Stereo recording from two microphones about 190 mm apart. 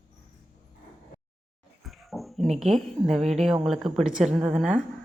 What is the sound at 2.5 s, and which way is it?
A woman's voice, centre (ahead or behind).